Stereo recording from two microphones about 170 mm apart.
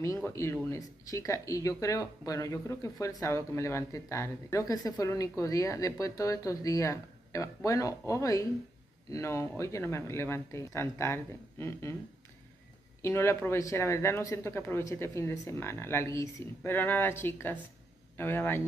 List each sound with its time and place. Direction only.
0.0 s speech: 15° left (ahead or behind)
13.0 s speech: 15° left (ahead or behind)